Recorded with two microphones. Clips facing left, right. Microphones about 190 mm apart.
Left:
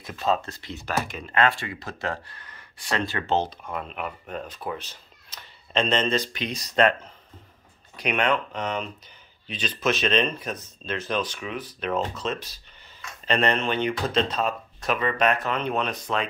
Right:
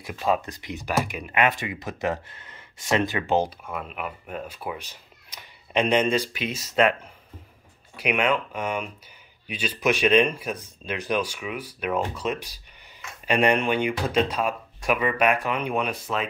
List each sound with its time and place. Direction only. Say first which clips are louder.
0.0 s speech: right 1 dB; 15° right (ahead or behind)